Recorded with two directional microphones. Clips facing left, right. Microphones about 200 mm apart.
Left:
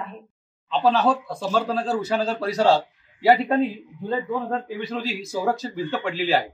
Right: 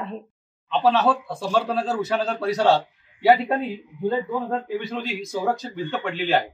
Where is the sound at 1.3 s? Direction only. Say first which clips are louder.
Right 1 dB; 5° right (ahead or behind).